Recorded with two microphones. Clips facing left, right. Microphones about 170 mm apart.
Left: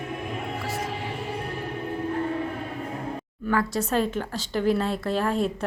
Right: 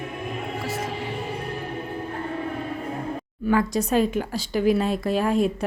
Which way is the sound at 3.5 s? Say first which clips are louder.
Right 3 dB; 15° right (ahead or behind).